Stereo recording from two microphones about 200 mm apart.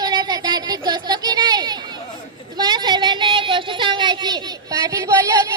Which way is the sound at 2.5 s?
20° right (ahead or behind).